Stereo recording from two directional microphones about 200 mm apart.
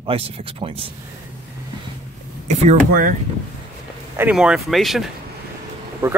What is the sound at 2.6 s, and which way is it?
Speech, 40° right (ahead or behind).